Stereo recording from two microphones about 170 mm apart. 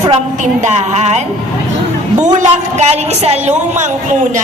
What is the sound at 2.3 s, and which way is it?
A woman's voice, 40° right (ahead or behind).